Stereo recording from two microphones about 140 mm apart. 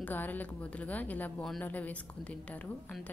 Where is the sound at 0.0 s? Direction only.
10° left (ahead or behind).